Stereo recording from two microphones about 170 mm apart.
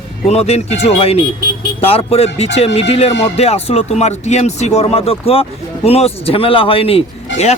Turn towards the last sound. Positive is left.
turn(degrees=40)  # may be behind; listen again after turning